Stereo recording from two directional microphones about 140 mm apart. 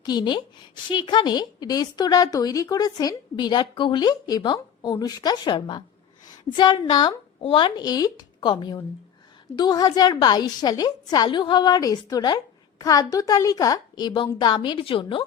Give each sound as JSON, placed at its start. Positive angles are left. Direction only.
{"t": 0.0, "sound": "a woman's voice", "side_deg": 30}
{"t": 6.2, "sound": "a sound", "side_deg": 30}
{"t": 7.4, "sound": "a woman's voice", "side_deg": 35}